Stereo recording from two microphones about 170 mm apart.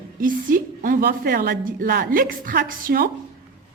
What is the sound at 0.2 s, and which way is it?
A woman's voice, 55° right (ahead or behind).